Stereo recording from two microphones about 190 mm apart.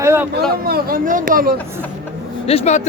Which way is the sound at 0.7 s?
50° right (ahead or behind).